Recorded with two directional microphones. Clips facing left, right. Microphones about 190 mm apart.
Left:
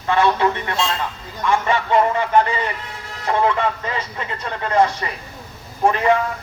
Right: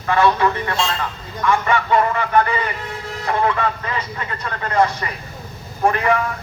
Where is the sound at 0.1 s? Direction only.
25° left (ahead or behind).